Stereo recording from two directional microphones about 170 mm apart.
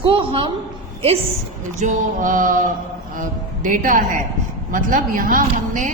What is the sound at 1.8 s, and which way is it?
A woman's voice, 50° right (ahead or behind).